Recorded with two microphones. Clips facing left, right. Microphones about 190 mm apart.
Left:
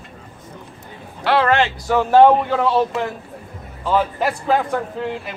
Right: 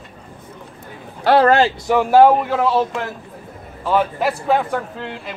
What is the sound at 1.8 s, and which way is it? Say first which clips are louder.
A man's voice: left 1 dB; 10° right (ahead or behind).